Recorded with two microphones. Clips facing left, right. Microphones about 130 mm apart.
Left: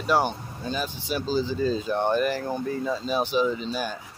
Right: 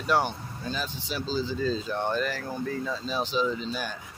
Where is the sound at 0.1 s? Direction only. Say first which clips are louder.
Left 2 dB; 15° left (ahead or behind).